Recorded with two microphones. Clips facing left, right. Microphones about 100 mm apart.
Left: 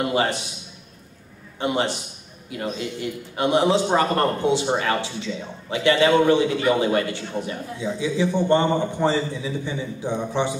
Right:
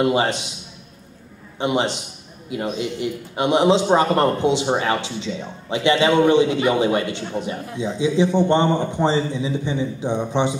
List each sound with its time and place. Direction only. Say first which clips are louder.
0.0 s a man's voice: right 3 dB; 20° right (ahead or behind)
1.6 s a man's voice: right 2 dB; 20° right (ahead or behind)